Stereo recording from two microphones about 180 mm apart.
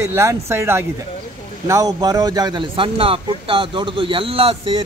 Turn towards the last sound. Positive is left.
turn(degrees=-30)  # may be behind; listen again after turning